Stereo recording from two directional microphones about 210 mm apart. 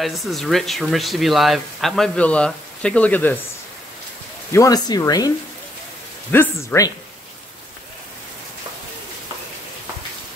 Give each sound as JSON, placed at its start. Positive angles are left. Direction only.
{"t": 0.0, "sound": "speech", "side_deg": 0}
{"t": 4.5, "sound": "speech", "side_deg": 15}
{"t": 6.3, "sound": "speech", "side_deg": 10}